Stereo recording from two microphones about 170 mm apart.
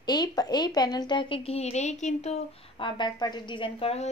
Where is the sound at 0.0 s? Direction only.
25° left (ahead or behind); by 2.9 s 40° left (ahead or behind).